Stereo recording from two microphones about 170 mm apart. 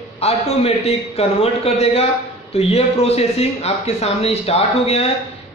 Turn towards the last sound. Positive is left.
turn(degrees=35)  # may be behind; listen again after turning